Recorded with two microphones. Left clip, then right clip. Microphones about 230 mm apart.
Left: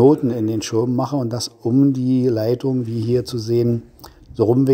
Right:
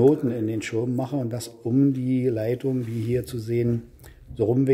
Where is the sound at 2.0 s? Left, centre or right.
Centre.